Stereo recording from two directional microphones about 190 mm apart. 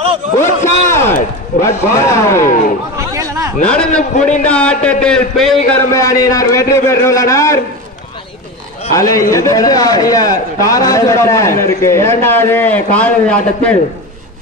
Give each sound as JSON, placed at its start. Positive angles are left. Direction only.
{"t": 0.4, "sound": "a sound", "side_deg": 15}
{"t": 1.6, "sound": "a man's voice", "side_deg": 15}
{"t": 3.0, "sound": "chatter", "side_deg": -15}
{"t": 3.6, "sound": "a man's voice", "side_deg": 5}
{"t": 5.7, "sound": "a man's voice", "side_deg": 15}
{"t": 8.9, "sound": "a man's voice", "side_deg": 15}